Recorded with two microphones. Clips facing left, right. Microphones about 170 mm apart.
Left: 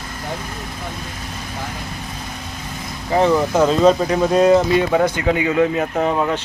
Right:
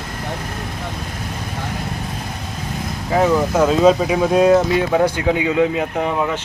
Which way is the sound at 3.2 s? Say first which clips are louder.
Even; 5° right (ahead or behind).